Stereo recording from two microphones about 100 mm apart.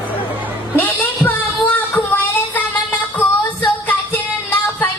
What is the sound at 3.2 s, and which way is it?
Music, 15° left (ahead or behind).